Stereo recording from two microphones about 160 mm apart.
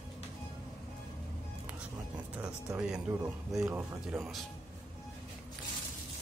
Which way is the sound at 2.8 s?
5° right (ahead or behind).